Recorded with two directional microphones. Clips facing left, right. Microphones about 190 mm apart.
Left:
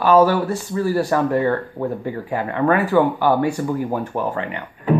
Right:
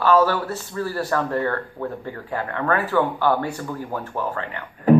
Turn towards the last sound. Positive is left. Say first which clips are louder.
# left 4 dB
turn(degrees=15)  # may be behind; listen again after turning